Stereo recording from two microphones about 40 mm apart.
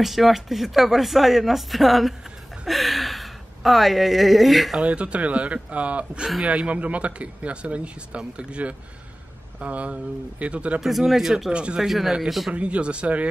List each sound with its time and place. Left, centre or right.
0.0 s speech: centre
4.8 s speech: right
10.8 s speech: centre
11.5 s speech: right
11.8 s speech: centre
12.5 s speech: right